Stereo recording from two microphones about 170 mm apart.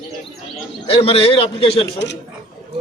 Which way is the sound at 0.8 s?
35° left (ahead or behind).